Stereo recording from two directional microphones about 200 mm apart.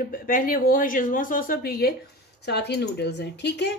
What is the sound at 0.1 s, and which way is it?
A woman's voice, 45° left (ahead or behind).